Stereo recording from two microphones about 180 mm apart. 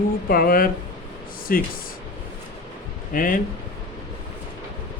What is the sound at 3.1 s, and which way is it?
Speech, 50° left (ahead or behind).